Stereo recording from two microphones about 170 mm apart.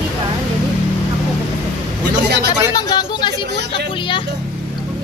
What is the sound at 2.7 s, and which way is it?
Speech, 25° left (ahead or behind).